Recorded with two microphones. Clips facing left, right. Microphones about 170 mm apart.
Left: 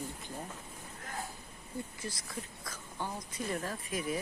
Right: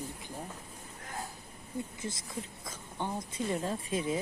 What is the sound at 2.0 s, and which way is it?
Speech, 20° right (ahead or behind).